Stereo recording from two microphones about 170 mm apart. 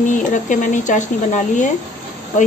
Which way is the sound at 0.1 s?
50° left (ahead or behind).